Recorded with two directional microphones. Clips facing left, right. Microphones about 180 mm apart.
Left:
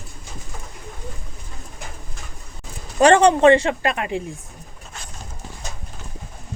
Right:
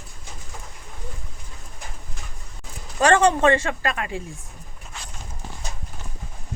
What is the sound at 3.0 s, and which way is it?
Speech, 20° left (ahead or behind).